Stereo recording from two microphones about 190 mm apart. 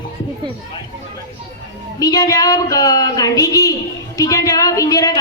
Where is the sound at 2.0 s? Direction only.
20° left (ahead or behind).